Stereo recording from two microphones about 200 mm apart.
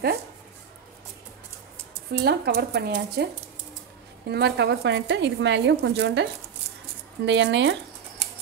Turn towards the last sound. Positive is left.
turn(degrees=-65)  # may be behind; listen again after turning